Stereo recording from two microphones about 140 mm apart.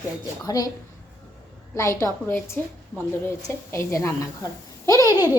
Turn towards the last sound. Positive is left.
turn(degrees=25)  # may be behind; listen again after turning